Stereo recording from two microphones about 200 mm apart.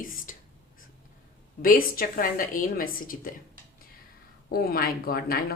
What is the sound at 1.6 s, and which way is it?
A woman's voice, 45° left (ahead or behind).